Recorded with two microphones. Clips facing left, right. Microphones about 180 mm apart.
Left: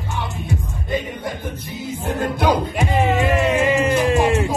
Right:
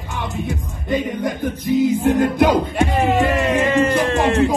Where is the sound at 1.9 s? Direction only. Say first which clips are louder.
Right 8 dB; 15° right (ahead or behind).